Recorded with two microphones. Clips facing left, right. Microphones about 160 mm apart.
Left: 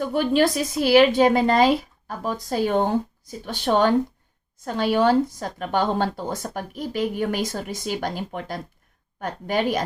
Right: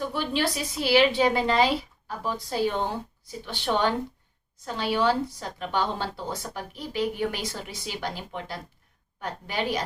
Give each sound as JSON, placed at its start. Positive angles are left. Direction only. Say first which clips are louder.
{"t": 0.1, "sound": "speech", "louder": "left 8 dB", "side_deg": 45}